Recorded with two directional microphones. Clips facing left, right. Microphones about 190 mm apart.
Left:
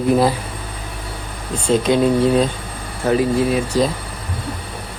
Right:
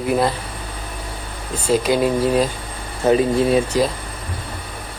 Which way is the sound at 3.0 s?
20° right (ahead or behind).